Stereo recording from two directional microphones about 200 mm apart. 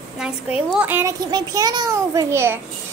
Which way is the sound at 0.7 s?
10° right (ahead or behind).